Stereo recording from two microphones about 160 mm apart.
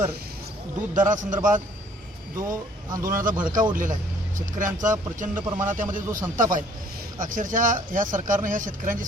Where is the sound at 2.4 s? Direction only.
20° right (ahead or behind).